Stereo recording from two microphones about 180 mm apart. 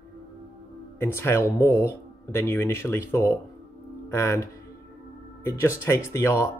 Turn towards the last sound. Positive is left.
turn(degrees=15)  # may be behind; listen again after turning